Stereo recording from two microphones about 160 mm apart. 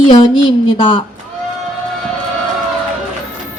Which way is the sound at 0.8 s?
30° left (ahead or behind).